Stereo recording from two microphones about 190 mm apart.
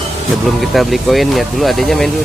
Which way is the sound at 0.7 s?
Centre (ahead or behind).